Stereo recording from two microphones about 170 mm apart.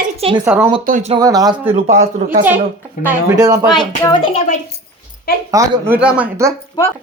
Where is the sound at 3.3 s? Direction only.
20° right (ahead or behind).